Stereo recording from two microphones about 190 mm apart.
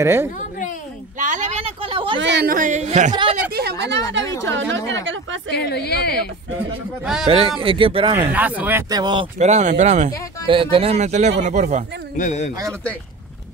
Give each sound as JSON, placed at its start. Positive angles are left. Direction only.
{"t": 0.0, "sound": "speech", "side_deg": -15}
{"t": 1.1, "sound": "speech", "side_deg": -40}
{"t": 2.1, "sound": "speech", "side_deg": -65}
{"t": 3.1, "sound": "speech", "side_deg": -25}
{"t": 3.5, "sound": "speech", "side_deg": -55}
{"t": 4.5, "sound": "a woman's voice", "side_deg": -75}
{"t": 5.5, "sound": "speech", "side_deg": 60}
{"t": 7.6, "sound": "speech", "side_deg": -30}
{"t": 8.2, "sound": "speech", "side_deg": -10}
{"t": 8.9, "sound": "speech", "side_deg": -25}
{"t": 9.4, "sound": "speech", "side_deg": -40}
{"t": 10.4, "sound": "speech", "side_deg": -25}
{"t": 12.2, "sound": "speech", "side_deg": 40}